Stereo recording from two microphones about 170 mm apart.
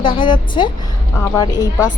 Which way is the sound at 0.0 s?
30° left (ahead or behind).